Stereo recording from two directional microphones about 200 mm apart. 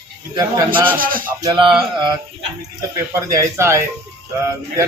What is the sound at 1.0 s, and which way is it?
Music, 45° right (ahead or behind).